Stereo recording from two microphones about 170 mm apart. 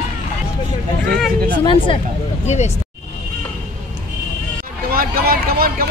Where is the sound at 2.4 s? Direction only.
40° left (ahead or behind).